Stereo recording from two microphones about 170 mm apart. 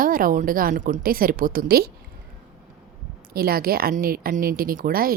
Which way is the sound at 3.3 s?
60° right (ahead or behind).